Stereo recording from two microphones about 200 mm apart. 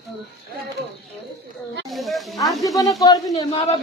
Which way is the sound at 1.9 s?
Centre (ahead or behind).